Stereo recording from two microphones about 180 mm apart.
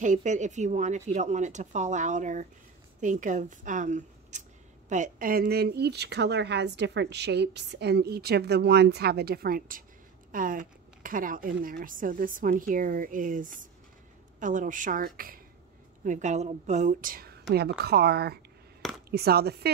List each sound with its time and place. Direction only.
0.0 s a woman's voice: 45° right (ahead or behind); by 19.7 s 60° right (ahead or behind)